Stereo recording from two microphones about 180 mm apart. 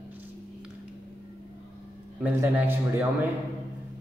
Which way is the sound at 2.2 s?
10° right (ahead or behind).